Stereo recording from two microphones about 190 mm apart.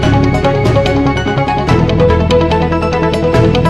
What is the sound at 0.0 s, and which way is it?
Music, centre (ahead or behind).